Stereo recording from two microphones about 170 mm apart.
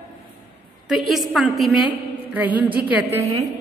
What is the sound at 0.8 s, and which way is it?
A woman's voice, centre (ahead or behind).